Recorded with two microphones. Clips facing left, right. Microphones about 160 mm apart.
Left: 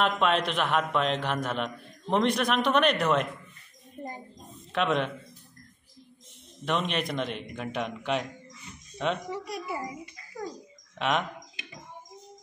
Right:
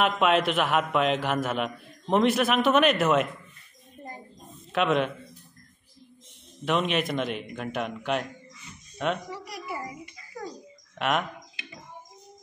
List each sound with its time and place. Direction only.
0.0 s a man's voice: 5° right (ahead or behind)
4.7 s a man's voice: centre (ahead or behind)
6.6 s a man's voice: centre (ahead or behind)
9.3 s a child's voice: 25° left (ahead or behind)
11.0 s speech: 5° right (ahead or behind)